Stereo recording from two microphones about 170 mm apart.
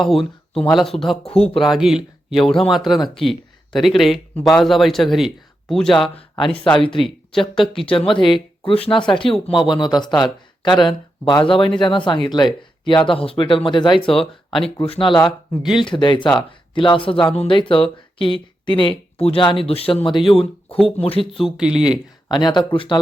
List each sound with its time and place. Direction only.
0.6 s speech: centre (ahead or behind)
5.9 s speech: 30° left (ahead or behind)
6.4 s speech: 5° left (ahead or behind)
6.7 s speech: 30° left (ahead or behind)
14.1 s speech: centre (ahead or behind)
14.8 s speech: 30° left (ahead or behind)
21.3 s speech: centre (ahead or behind)
22.3 s speech: 25° left (ahead or behind)